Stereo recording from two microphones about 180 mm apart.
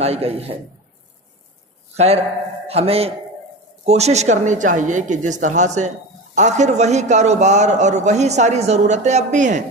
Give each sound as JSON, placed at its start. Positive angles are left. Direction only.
{"t": 0.0, "sound": "speech", "side_deg": -35}
{"t": 2.6, "sound": "a man's voice", "side_deg": -35}